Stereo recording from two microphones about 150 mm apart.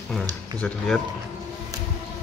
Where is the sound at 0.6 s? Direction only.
10° left (ahead or behind).